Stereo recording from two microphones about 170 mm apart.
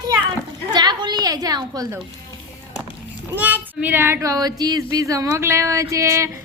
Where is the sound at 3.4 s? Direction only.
10° right (ahead or behind).